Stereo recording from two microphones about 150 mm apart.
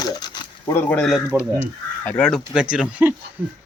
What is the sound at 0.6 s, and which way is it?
Speech, 15° left (ahead or behind).